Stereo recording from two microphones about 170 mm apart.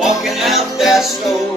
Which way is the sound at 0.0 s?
Centre (ahead or behind).